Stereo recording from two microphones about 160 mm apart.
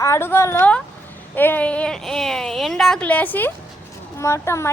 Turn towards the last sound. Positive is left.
turn(degrees=15)  # may be behind; listen again after turning